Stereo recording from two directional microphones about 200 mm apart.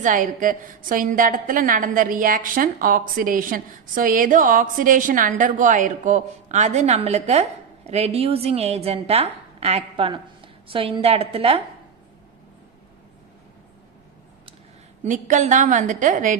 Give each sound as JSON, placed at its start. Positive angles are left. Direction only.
{"t": 0.0, "sound": "a woman's voice", "side_deg": -40}
{"t": 15.0, "sound": "a woman's voice", "side_deg": -40}